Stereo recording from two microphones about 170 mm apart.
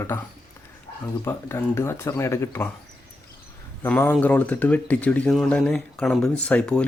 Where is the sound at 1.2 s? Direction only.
15° left (ahead or behind).